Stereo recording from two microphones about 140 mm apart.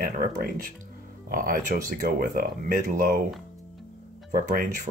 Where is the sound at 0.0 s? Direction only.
90° right.